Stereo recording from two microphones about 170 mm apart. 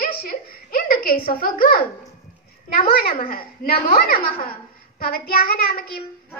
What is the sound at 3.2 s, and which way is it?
A woman's voice, 60° left (ahead or behind).